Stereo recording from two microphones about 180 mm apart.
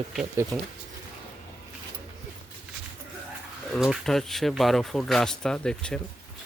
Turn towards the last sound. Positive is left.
turn(degrees=5)  # may be behind; listen again after turning